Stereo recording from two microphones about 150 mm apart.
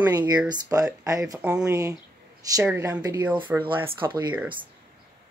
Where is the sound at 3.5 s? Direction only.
10° right (ahead or behind).